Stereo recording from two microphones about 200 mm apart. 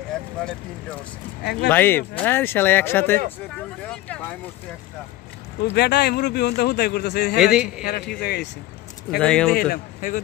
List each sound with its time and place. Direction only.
1.4 s a man's voice: 55° left (ahead or behind)
1.7 s speech: 10° left (ahead or behind)
5.6 s a man's voice: 55° left (ahead or behind)
7.3 s a man's voice: 5° right (ahead or behind)
8.2 s a man's voice: 50° left (ahead or behind)
9.2 s a man's voice: 5° left (ahead or behind)
9.5 s a man's voice: 45° left (ahead or behind)